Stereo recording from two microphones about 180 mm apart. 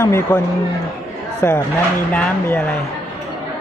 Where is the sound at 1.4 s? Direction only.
15° left (ahead or behind).